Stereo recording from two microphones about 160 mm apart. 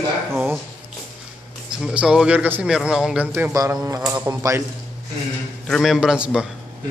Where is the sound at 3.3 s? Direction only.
15° right (ahead or behind).